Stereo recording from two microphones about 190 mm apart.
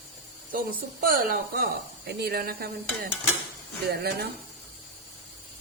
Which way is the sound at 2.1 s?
55° right (ahead or behind).